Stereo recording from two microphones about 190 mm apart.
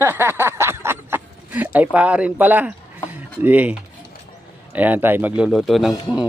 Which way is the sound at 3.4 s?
10° right (ahead or behind).